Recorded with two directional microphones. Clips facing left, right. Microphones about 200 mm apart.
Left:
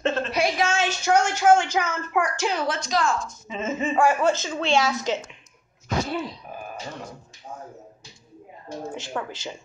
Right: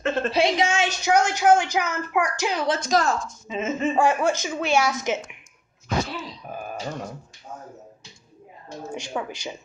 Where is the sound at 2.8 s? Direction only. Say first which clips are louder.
Right 2 dB; 45° right (ahead or behind).